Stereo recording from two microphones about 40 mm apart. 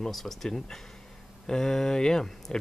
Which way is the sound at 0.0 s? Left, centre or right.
Centre.